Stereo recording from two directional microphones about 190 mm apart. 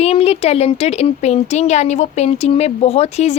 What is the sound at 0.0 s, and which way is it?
A woman's voice, 30° left (ahead or behind).